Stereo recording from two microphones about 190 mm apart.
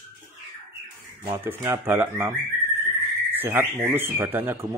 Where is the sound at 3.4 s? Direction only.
10° right (ahead or behind).